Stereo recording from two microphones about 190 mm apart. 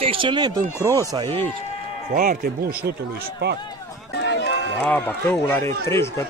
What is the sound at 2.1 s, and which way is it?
Speech, 50° right (ahead or behind).